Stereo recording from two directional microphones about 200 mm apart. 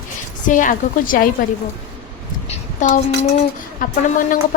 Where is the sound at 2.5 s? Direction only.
40° left (ahead or behind).